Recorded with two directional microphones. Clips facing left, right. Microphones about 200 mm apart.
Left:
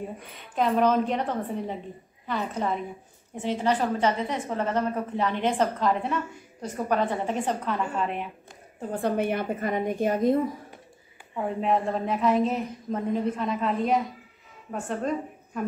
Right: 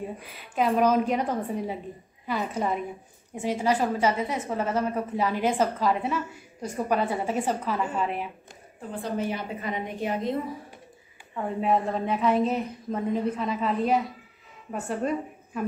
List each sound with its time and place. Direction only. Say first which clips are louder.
0.2 s a woman's voice: even; 10° right (ahead or behind)
8.9 s a woman's voice: left 4 dB; 60° left (ahead or behind)
11.3 s a woman's voice: even; centre (ahead or behind)